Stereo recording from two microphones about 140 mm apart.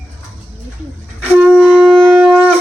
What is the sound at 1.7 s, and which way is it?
Shofar, 15° right (ahead or behind).